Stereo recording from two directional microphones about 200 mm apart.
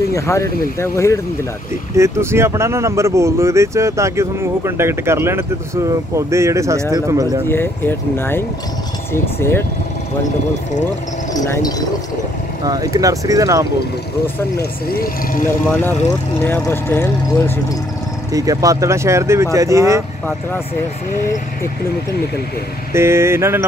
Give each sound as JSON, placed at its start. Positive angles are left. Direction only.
{"t": 0.1, "sound": "speech", "side_deg": 15}
{"t": 2.0, "sound": "speech", "side_deg": -15}
{"t": 7.4, "sound": "speech", "side_deg": 10}
{"t": 11.3, "sound": "speech", "side_deg": 20}
{"t": 12.6, "sound": "speech", "side_deg": -20}
{"t": 15.4, "sound": "speech", "side_deg": 10}
{"t": 18.3, "sound": "speech", "side_deg": -15}
{"t": 22.9, "sound": "speech", "side_deg": -15}